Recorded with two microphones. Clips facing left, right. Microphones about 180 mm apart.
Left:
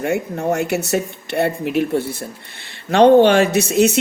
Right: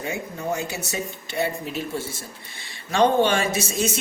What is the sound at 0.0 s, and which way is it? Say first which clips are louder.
Speech: left 9 dB; 70° left (ahead or behind).